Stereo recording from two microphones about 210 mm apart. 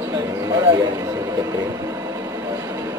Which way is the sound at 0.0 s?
15° right (ahead or behind).